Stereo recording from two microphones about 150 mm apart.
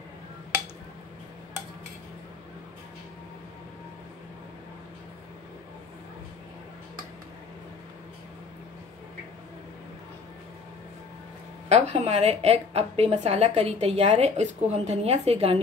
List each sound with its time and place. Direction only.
11.7 s a woman's voice: 50° right (ahead or behind)